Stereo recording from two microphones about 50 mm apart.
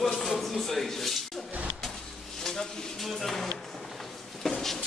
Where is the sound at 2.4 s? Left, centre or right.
Centre.